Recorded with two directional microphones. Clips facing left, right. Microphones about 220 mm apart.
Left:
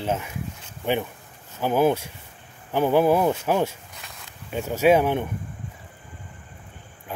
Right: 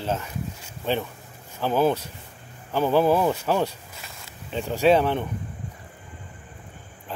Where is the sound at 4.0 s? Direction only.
Centre (ahead or behind).